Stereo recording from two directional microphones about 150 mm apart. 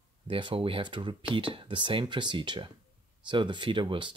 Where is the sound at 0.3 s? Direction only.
35° right (ahead or behind).